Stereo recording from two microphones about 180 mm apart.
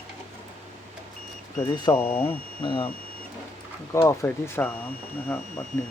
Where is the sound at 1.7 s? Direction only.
25° left (ahead or behind).